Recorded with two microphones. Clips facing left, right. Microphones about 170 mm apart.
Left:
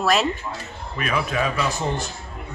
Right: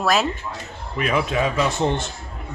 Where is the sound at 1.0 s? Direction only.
20° right (ahead or behind).